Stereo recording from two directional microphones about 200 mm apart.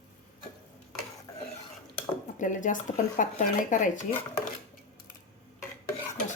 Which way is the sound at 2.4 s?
40° left (ahead or behind).